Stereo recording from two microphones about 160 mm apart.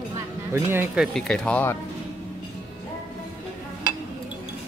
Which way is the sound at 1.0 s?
Centre (ahead or behind).